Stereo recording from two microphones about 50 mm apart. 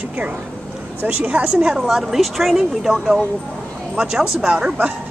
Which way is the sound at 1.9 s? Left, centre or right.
Centre.